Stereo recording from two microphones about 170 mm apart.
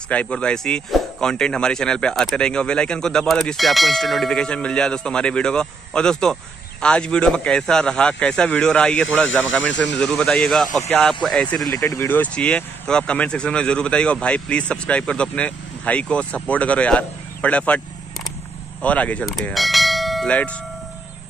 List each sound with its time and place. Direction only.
0.1 s speech: 5° left (ahead or behind)
9.6 s speech: 90° left
9.9 s speech: 5° left (ahead or behind)
11.7 s speech: 15° left (ahead or behind)
18.8 s church bell: 10° left (ahead or behind)